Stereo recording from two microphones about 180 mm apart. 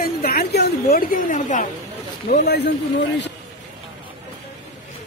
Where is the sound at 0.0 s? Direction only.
55° left (ahead or behind).